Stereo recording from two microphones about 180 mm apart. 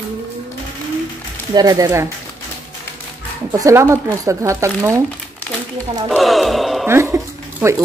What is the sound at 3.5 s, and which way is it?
Speech, 15° right (ahead or behind).